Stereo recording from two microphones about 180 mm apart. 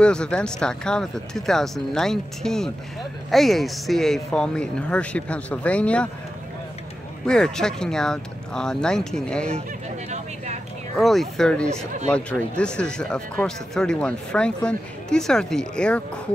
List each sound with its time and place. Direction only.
0.0 s speech: 5° left (ahead or behind)
7.2 s speech: 5° left (ahead or behind)
10.0 s a sound: 40° right (ahead or behind)
11.0 s speech: centre (ahead or behind)